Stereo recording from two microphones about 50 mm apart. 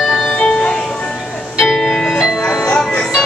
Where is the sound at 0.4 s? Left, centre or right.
Left.